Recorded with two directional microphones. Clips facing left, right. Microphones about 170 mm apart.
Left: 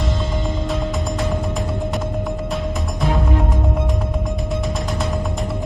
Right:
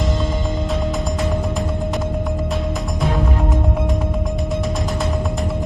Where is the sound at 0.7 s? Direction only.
Centre (ahead or behind).